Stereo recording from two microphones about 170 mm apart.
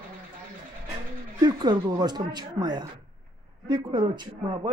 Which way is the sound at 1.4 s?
25° right (ahead or behind).